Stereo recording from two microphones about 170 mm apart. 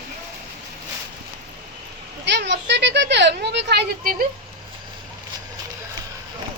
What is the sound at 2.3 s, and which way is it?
Speech, 90° right.